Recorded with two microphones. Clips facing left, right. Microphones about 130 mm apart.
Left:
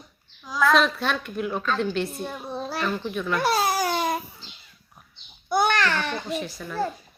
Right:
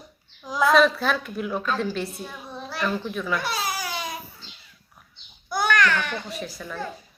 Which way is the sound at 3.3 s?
50° left (ahead or behind).